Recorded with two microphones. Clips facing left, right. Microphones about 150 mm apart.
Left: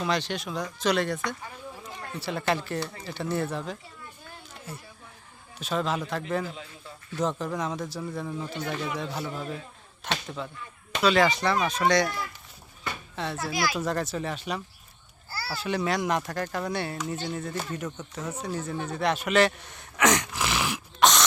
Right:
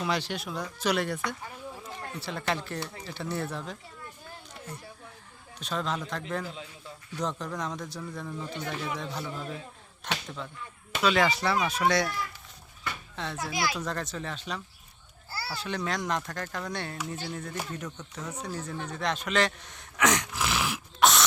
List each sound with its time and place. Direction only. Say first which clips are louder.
0.0 s speech: left 2 dB; 10° right (ahead or behind)
1.8 s speech: left 5 dB; centre (ahead or behind)
4.5 s a sound: left 1 dB; 5° left (ahead or behind)
5.5 s speech: left 4 dB; 5° left (ahead or behind)
7.2 s speech: left 4 dB; 5° left (ahead or behind)
13.1 s speech: left 4 dB; 5° left (ahead or behind)
13.5 s speech: left 1 dB; 25° right (ahead or behind)
13.8 s speech: left 5 dB; 10° left (ahead or behind)